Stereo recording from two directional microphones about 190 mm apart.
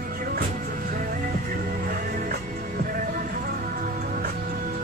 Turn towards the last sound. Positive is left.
turn(degrees=-50)  # may be behind; listen again after turning